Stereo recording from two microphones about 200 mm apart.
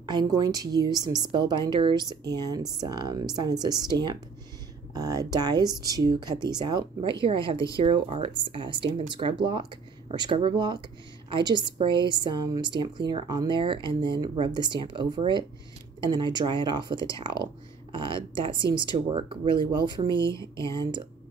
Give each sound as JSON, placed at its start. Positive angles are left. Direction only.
{"t": 0.0, "sound": "speech", "side_deg": -20}
{"t": 20.2, "sound": "speech", "side_deg": 15}